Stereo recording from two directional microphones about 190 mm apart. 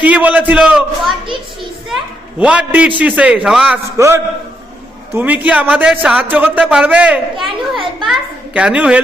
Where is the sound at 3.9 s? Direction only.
15° right (ahead or behind).